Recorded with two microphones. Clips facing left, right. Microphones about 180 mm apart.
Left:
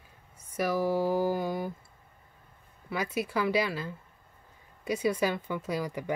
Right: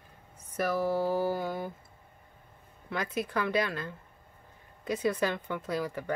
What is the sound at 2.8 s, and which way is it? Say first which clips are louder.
Speech: left 1 dB; 10° left (ahead or behind).